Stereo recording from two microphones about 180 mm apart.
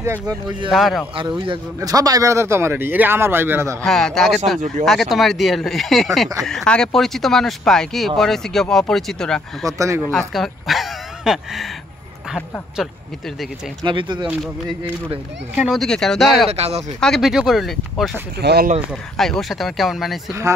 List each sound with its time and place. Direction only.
0.0 s speech: 15° right (ahead or behind)
0.7 s speech: centre (ahead or behind)
1.1 s speech: 25° right (ahead or behind); by 3.7 s 10° right (ahead or behind)
3.8 s speech: centre (ahead or behind)
9.7 s speech: 15° right (ahead or behind)
10.1 s speech: centre (ahead or behind)
13.8 s speech: 25° right (ahead or behind)
15.5 s speech: 5° right (ahead or behind)
16.4 s speech: 35° right (ahead or behind)
17.0 s speech: centre (ahead or behind)
18.4 s speech: 65° right (ahead or behind)
19.1 s speech: centre (ahead or behind)